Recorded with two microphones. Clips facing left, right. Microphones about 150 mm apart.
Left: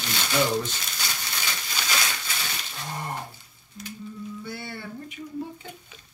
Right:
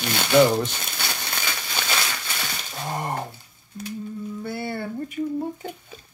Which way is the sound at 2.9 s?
55° right (ahead or behind).